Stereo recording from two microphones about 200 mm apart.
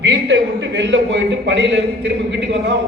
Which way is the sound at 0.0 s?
60° right (ahead or behind).